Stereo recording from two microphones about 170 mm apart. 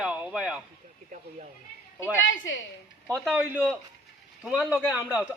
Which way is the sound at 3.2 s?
10° right (ahead or behind).